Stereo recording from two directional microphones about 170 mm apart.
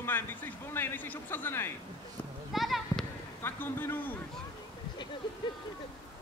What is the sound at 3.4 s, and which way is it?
Speech, 15° left (ahead or behind).